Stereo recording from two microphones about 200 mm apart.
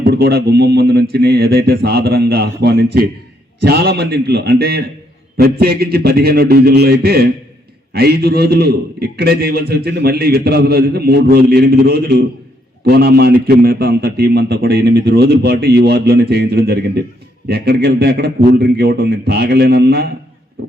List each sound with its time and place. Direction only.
0.0 s a man's voice: 50° right (ahead or behind)